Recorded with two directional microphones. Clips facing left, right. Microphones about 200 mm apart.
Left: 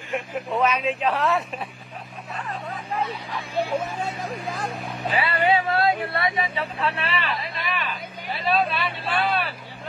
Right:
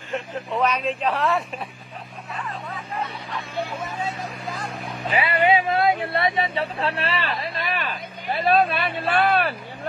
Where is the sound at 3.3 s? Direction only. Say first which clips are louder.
Left 4 dB; 10° left (ahead or behind).